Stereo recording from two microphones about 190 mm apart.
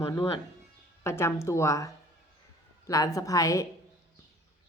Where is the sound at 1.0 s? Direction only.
15° left (ahead or behind).